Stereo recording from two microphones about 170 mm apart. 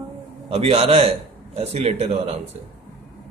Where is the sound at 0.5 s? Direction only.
35° right (ahead or behind).